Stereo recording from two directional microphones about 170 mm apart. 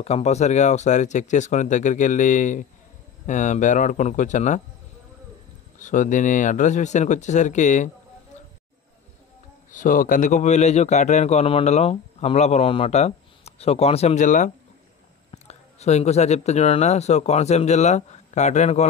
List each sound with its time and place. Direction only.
0.0 s speech: 40° left (ahead or behind)
5.8 s speech: 50° left (ahead or behind)
9.7 s a man's voice: 50° left (ahead or behind)